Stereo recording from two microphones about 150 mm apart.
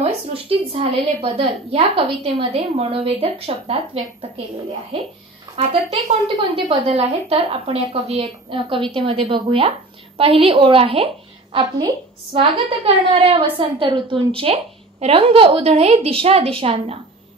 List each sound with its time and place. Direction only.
0.0 s a woman's voice: 40° right (ahead or behind)
5.6 s a woman's voice: 45° right (ahead or behind)
12.4 s a woman's voice: 40° right (ahead or behind)